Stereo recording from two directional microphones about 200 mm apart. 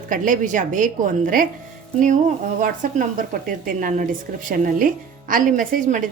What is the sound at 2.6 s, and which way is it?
A woman's voice, 40° right (ahead or behind).